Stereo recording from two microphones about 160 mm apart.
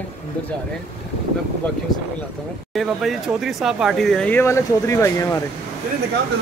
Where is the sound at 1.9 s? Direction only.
25° left (ahead or behind).